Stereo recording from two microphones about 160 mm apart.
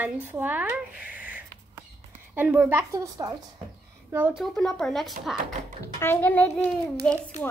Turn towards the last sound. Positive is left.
turn(degrees=5)  # may be behind; listen again after turning